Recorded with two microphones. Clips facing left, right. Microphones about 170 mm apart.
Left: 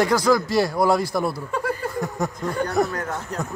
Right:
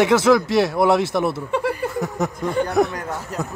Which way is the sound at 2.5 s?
Centre (ahead or behind).